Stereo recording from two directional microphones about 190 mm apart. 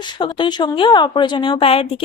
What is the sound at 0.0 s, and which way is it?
A woman's voice, 25° left (ahead or behind).